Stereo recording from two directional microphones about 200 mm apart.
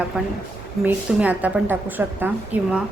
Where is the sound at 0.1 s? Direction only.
5° right (ahead or behind).